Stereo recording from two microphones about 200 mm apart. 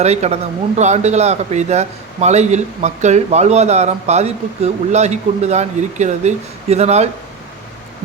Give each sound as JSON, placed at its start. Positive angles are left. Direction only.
{"t": 0.0, "sound": "a man's voice", "side_deg": -35}